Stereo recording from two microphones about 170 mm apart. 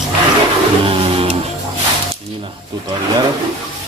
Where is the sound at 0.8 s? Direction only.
35° right (ahead or behind).